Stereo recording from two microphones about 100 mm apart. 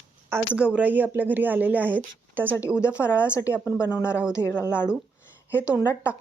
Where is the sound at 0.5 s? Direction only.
10° right (ahead or behind).